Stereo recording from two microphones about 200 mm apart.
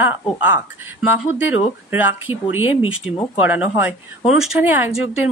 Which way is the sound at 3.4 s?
10° right (ahead or behind).